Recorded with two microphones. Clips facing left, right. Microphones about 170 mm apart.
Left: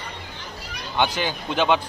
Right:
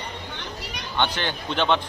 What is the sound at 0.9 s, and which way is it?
Speech, 10° left (ahead or behind).